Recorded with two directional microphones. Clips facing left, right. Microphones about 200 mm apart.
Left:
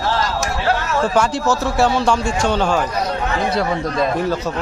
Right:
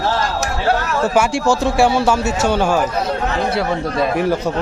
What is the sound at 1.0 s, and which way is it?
A man's voice, 10° right (ahead or behind).